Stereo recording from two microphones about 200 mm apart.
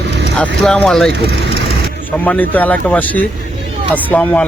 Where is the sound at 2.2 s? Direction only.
10° left (ahead or behind).